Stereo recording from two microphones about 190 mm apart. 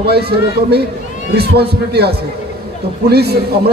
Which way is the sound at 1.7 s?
55° right (ahead or behind).